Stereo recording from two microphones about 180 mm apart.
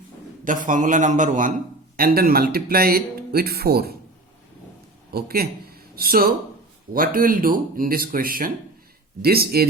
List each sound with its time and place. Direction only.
0.4 s speech: 50° right (ahead or behind)
5.1 s speech: 55° right (ahead or behind)